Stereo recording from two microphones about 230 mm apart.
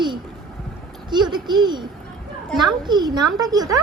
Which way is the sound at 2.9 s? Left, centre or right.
Centre.